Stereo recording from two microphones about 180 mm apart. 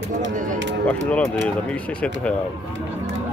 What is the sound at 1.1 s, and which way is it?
Speech, 10° left (ahead or behind).